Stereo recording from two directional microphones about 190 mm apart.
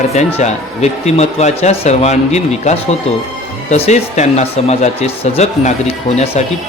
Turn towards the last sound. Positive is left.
turn(degrees=30)  # may be behind; listen again after turning